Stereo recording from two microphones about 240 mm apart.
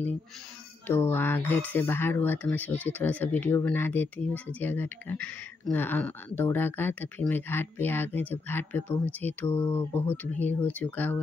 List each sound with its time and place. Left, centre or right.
0.8 s speech: centre